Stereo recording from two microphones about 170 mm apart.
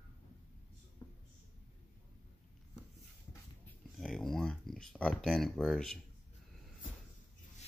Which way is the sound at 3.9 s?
Centre (ahead or behind).